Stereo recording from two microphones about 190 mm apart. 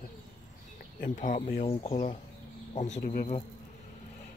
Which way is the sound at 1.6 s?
30° left (ahead or behind).